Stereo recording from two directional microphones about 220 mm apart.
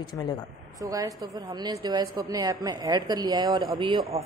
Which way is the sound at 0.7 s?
15° right (ahead or behind).